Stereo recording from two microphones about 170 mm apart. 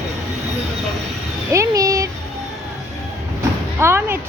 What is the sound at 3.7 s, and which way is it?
Speech, 15° right (ahead or behind).